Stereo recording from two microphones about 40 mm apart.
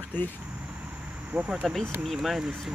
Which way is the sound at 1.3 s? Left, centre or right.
Centre.